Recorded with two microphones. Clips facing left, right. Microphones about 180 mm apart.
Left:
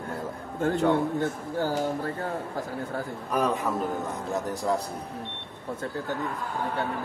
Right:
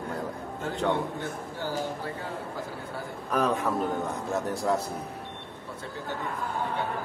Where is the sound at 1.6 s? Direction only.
45° left (ahead or behind).